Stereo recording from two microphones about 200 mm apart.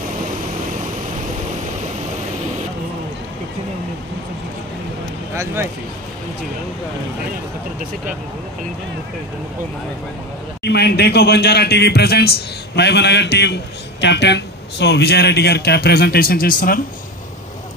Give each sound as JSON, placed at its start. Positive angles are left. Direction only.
{"t": 5.3, "sound": "speech", "side_deg": -10}
{"t": 10.6, "sound": "a man's voice", "side_deg": 55}